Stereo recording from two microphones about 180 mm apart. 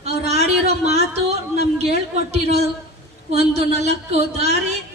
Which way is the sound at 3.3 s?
35° right (ahead or behind).